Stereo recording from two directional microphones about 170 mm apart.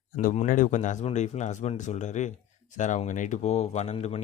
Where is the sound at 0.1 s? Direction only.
45° left (ahead or behind).